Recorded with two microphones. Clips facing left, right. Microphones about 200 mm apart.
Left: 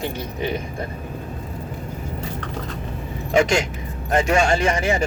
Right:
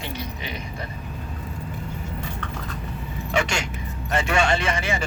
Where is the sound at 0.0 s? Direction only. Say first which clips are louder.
Left 7 dB; 50° left (ahead or behind).